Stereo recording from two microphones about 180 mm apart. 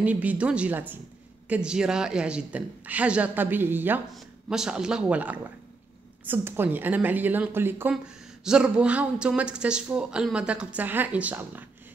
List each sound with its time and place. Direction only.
0.0 s a woman's voice: 10° right (ahead or behind)